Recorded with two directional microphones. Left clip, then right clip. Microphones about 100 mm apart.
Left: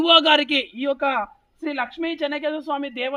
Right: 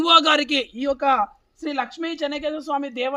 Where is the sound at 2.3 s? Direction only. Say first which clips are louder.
Even; 40° right (ahead or behind).